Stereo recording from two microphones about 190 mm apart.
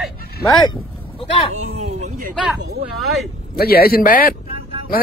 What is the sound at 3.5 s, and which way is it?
Speech, 55° left (ahead or behind).